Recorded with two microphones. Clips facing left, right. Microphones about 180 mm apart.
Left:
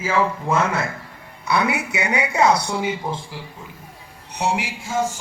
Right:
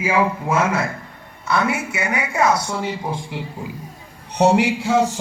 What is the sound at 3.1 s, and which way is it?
Speech, 20° right (ahead or behind).